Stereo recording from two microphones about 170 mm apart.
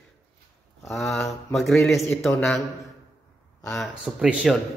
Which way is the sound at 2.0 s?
15° left (ahead or behind).